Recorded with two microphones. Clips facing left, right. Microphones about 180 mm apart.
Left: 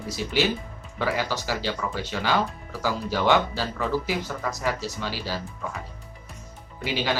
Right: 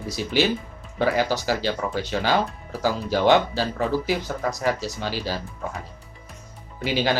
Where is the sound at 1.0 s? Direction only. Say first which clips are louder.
Right 5 dB; 40° right (ahead or behind).